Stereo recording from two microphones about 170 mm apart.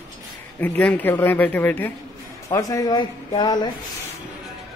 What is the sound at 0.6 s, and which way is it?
Speech, 10° left (ahead or behind).